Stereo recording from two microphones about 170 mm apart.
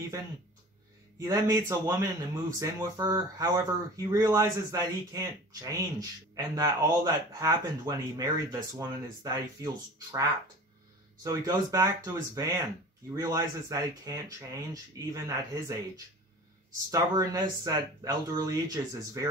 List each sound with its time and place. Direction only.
1.2 s speech: 20° right (ahead or behind)
16.9 s speech: 20° right (ahead or behind)